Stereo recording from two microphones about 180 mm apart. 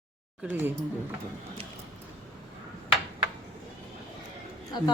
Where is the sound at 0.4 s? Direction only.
10° right (ahead or behind).